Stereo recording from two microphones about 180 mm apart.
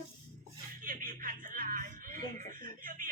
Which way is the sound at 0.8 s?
50° right (ahead or behind).